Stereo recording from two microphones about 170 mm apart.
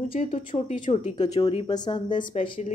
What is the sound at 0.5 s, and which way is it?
Speech, 40° left (ahead or behind).